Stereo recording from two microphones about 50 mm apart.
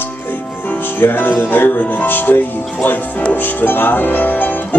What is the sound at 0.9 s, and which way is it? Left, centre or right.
Speech, left.